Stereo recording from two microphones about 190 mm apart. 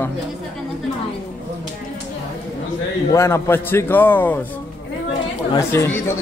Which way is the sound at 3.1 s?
15° left (ahead or behind).